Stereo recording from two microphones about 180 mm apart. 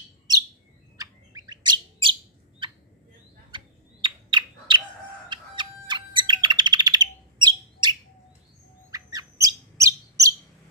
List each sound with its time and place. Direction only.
0.9 s bird: 20° right (ahead or behind)
3.5 s bird: 25° right (ahead or behind)
8.9 s bird: 20° right (ahead or behind)